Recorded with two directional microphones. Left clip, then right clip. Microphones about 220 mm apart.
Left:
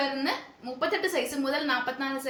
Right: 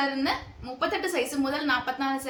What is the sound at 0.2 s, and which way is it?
A woman's voice, 15° right (ahead or behind).